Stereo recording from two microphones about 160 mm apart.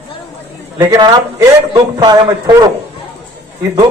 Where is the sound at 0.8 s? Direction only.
25° right (ahead or behind).